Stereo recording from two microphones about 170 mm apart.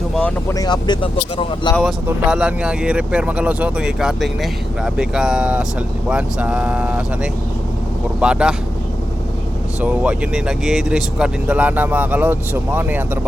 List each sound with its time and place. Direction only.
0.2 s speech: 5° left (ahead or behind)
0.5 s speech: 25° left (ahead or behind)
2.0 s speech: 5° right (ahead or behind)
8.2 s speech: 5° right (ahead or behind)
9.8 s speech: 5° right (ahead or behind)